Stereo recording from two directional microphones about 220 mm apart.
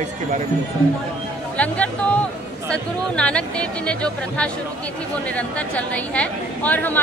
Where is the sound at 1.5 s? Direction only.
5° left (ahead or behind).